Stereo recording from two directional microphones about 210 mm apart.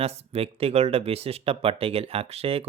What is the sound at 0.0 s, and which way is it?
Speech, 30° right (ahead or behind).